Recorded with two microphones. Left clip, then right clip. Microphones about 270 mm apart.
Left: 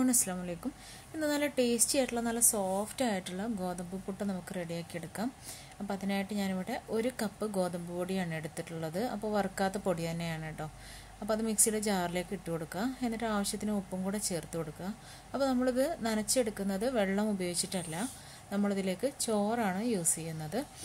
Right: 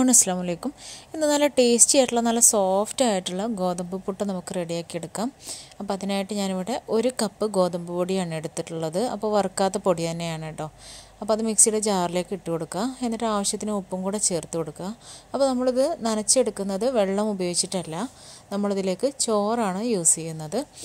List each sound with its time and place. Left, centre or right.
0.0 s a woman's voice: right